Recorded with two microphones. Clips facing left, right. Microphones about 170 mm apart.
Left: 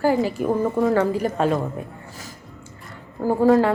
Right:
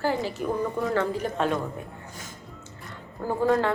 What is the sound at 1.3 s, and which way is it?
Speech, 40° left (ahead or behind).